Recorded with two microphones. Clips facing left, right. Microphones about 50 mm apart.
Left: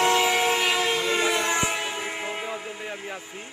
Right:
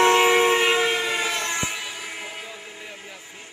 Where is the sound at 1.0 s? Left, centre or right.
Centre.